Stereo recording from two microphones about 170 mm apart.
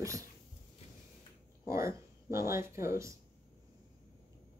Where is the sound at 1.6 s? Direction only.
15° right (ahead or behind).